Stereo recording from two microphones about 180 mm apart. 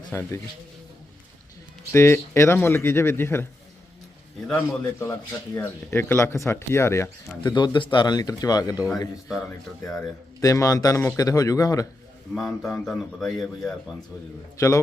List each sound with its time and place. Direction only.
0.1 s speech: 15° left (ahead or behind)
1.9 s speech: 15° left (ahead or behind)
4.4 s speech: 10° left (ahead or behind)
12.3 s a man's voice: centre (ahead or behind)